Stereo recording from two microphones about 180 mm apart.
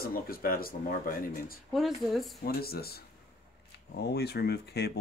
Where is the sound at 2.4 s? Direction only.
60° left (ahead or behind).